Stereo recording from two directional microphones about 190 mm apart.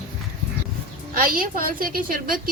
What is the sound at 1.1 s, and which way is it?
A woman's voice, 50° right (ahead or behind).